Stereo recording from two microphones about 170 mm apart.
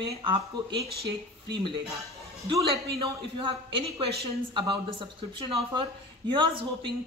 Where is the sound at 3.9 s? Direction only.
30° right (ahead or behind).